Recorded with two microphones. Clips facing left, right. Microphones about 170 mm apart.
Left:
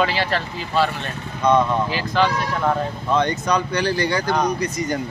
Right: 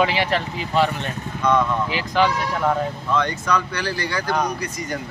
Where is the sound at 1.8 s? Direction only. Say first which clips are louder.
Even; 15° right (ahead or behind).